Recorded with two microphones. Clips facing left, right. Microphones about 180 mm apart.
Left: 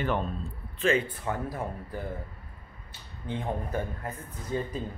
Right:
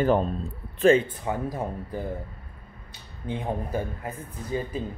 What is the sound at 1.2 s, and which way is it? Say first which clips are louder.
Speech: right 3 dB; 15° right (ahead or behind).